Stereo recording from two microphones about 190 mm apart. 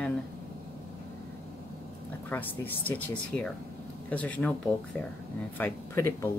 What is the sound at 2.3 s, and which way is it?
Speech, 10° left (ahead or behind).